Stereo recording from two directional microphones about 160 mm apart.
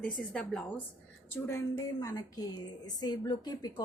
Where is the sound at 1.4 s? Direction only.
20° left (ahead or behind).